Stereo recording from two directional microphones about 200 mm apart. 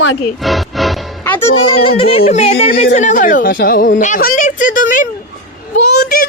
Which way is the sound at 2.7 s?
35° left (ahead or behind).